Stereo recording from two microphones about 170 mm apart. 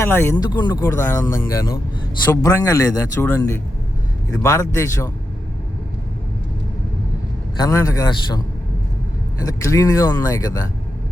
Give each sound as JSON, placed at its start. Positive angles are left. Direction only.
{"t": 0.0, "sound": "speech", "side_deg": 15}
{"t": 7.5, "sound": "speech", "side_deg": 20}
{"t": 9.4, "sound": "speech", "side_deg": 20}